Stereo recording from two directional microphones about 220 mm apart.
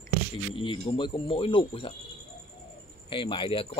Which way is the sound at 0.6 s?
20° left (ahead or behind).